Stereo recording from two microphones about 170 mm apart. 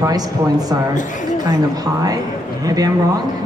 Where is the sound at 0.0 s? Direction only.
20° right (ahead or behind).